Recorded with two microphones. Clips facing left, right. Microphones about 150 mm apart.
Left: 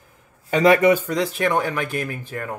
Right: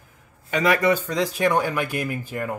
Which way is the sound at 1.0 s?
Centre (ahead or behind).